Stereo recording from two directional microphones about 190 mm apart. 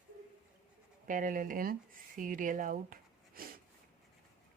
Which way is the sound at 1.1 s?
45° right (ahead or behind).